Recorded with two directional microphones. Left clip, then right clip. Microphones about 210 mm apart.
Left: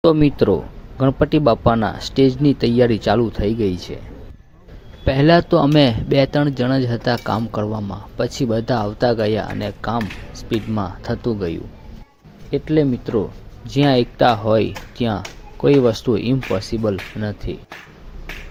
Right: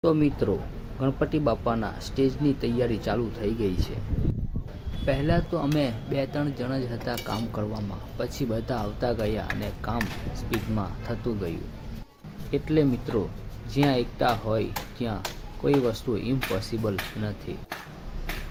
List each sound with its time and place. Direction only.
0.0 s speech: 35° left (ahead or behind)
5.0 s speech: 40° left (ahead or behind)